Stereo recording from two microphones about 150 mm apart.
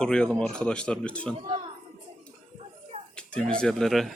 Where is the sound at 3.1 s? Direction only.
5° left (ahead or behind).